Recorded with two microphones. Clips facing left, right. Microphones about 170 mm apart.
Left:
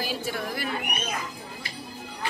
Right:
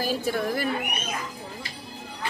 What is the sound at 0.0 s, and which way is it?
Speech, 45° right (ahead or behind).